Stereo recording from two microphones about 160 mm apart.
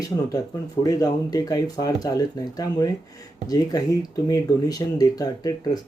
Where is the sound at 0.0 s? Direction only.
20° left (ahead or behind).